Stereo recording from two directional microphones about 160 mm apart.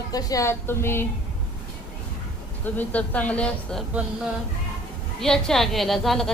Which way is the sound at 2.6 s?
10° left (ahead or behind).